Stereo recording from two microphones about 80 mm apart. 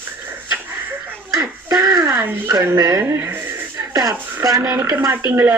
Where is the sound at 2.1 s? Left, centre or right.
Right.